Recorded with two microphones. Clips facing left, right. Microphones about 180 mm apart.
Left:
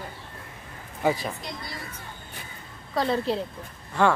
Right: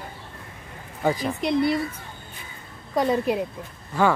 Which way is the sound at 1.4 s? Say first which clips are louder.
Right 16 dB; 65° right (ahead or behind).